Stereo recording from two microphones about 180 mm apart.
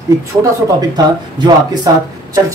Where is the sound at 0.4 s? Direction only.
20° right (ahead or behind).